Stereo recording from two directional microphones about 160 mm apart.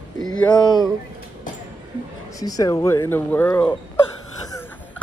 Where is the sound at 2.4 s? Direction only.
20° left (ahead or behind).